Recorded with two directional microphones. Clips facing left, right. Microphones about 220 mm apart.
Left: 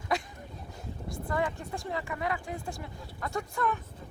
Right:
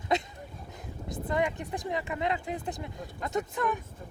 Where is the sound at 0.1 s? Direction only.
20° right (ahead or behind).